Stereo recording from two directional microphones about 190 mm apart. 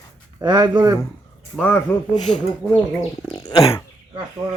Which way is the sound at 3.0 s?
30° left (ahead or behind).